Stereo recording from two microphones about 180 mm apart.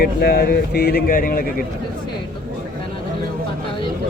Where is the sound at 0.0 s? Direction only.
60° left (ahead or behind).